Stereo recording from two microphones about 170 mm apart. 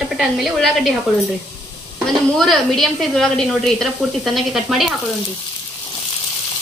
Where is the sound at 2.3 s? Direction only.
5° left (ahead or behind).